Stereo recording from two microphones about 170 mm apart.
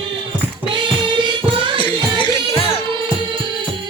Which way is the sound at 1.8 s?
30° left (ahead or behind).